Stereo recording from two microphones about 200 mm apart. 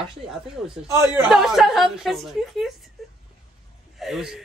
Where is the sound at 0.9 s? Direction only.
10° right (ahead or behind).